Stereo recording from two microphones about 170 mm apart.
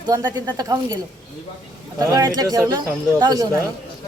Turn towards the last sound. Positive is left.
turn(degrees=-25)  # may be behind; listen again after turning